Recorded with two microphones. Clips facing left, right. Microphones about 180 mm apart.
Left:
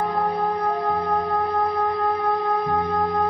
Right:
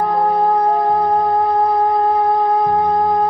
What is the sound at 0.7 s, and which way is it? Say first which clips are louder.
Music: right 7 dB; 30° right (ahead or behind).